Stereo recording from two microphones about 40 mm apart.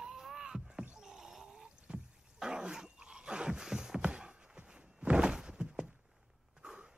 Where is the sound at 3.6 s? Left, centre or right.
Centre.